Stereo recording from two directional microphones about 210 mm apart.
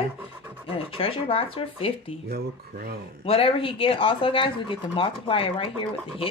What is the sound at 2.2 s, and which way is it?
Speech, 50° right (ahead or behind).